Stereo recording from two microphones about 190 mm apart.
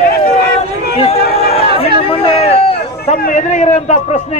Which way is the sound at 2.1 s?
30° left (ahead or behind).